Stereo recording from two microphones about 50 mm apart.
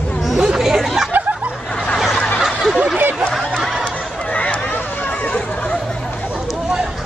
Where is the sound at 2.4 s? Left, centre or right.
Centre.